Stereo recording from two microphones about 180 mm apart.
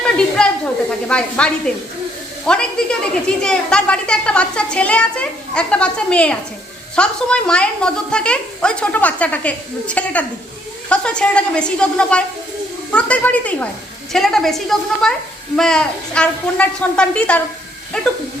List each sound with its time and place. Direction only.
0.3 s a woman's voice: 5° left (ahead or behind)